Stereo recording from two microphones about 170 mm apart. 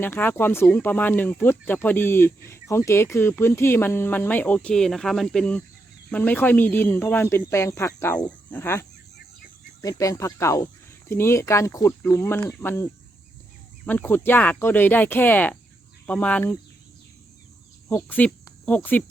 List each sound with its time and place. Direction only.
0.0 s speech: 10° left (ahead or behind)
10.0 s speech: 20° left (ahead or behind)
17.8 s speech: 10° left (ahead or behind)